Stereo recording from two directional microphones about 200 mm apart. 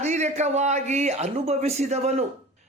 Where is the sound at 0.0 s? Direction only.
35° right (ahead or behind).